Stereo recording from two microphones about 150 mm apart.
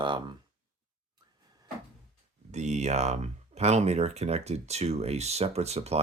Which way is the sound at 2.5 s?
50° right (ahead or behind).